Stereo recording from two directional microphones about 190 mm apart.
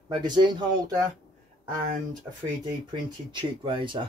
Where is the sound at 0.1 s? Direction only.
20° right (ahead or behind).